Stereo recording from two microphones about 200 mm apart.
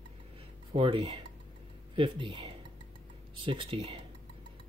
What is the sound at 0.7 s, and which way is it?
Speech, 25° right (ahead or behind).